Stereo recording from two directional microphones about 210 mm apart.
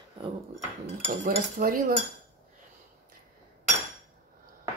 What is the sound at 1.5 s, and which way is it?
Dishes, 40° right (ahead or behind).